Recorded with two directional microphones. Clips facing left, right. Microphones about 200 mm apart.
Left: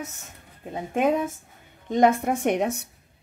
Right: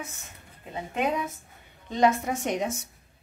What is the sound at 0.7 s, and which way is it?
A woman's voice, 50° left (ahead or behind).